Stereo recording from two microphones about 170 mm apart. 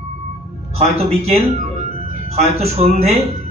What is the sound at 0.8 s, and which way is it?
Speech, 40° right (ahead or behind).